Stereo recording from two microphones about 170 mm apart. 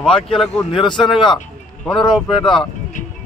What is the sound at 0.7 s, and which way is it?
Speech, 25° left (ahead or behind).